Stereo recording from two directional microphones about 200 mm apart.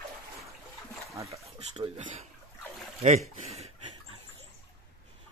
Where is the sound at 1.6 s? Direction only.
30° right (ahead or behind).